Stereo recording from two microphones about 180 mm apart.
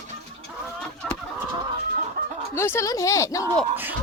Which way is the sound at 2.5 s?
15° left (ahead or behind).